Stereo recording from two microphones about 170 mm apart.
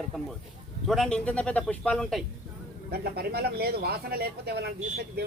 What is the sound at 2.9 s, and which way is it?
Speech, 70° right (ahead or behind).